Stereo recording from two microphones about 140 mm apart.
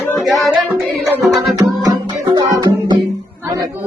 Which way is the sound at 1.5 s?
25° right (ahead or behind).